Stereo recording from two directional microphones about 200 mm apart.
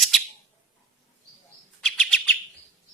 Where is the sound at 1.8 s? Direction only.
Centre (ahead or behind).